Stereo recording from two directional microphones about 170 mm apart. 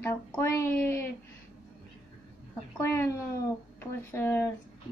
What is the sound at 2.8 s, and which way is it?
A woman's voice, 15° left (ahead or behind).